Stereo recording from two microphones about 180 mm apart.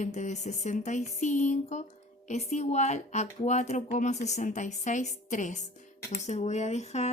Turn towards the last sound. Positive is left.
turn(degrees=40)  # may be behind; listen again after turning